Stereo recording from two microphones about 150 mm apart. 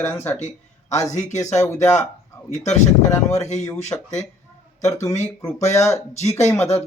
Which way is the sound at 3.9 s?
20° left (ahead or behind).